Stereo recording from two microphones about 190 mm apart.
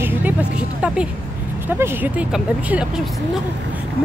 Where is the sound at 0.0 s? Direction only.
10° right (ahead or behind).